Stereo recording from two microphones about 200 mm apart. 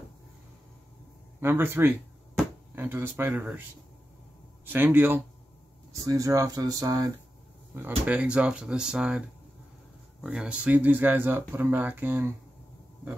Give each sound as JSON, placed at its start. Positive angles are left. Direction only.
{"t": 1.4, "sound": "speech", "side_deg": -10}
{"t": 4.6, "sound": "speech", "side_deg": -10}
{"t": 10.2, "sound": "speech", "side_deg": -5}